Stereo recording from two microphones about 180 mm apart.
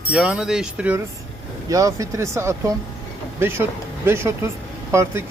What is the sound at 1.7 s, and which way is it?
Speech, 20° right (ahead or behind).